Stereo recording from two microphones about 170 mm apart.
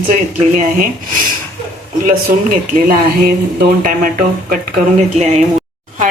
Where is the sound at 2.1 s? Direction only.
55° right (ahead or behind).